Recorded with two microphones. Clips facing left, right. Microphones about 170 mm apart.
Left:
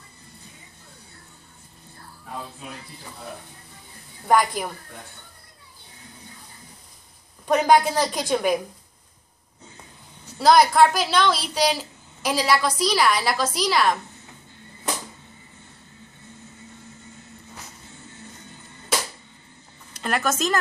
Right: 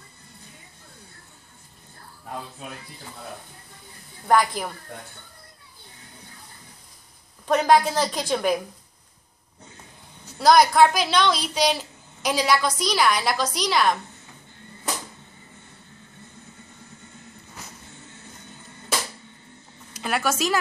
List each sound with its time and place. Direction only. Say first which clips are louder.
4.3 s a woman's voice: even; 5° left (ahead or behind)
7.4 s a woman's voice: left 1 dB; 5° left (ahead or behind)
10.4 s a woman's voice: even; centre (ahead or behind)
19.9 s speech: even; 5° right (ahead or behind)